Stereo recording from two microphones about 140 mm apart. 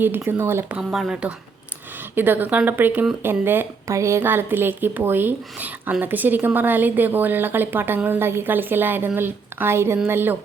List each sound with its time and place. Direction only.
0.0 s speech: 15° right (ahead or behind)
0.8 s speech: 5° right (ahead or behind)